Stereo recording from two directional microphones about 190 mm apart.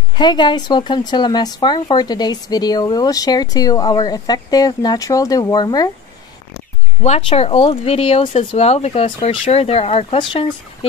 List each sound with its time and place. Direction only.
0.1 s speech: 25° left (ahead or behind)
7.0 s speech: 30° left (ahead or behind)